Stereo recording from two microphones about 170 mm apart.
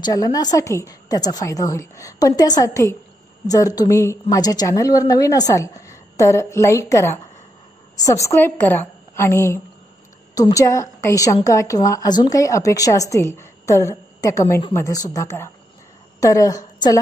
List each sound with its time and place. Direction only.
0.0 s a woman's voice: 20° left (ahead or behind)